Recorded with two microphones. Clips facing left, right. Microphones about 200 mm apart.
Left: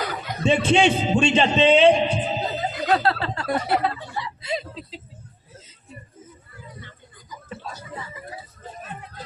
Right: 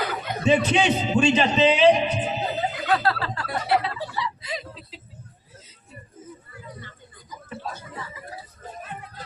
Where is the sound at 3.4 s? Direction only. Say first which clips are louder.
Left 2 dB; 45° left (ahead or behind).